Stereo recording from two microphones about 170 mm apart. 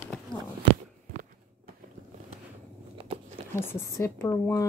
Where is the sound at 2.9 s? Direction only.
35° right (ahead or behind).